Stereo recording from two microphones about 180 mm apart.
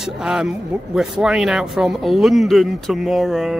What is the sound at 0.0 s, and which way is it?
Speech, 5° right (ahead or behind).